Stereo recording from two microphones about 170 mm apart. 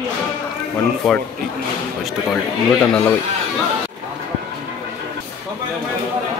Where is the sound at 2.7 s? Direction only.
5° left (ahead or behind).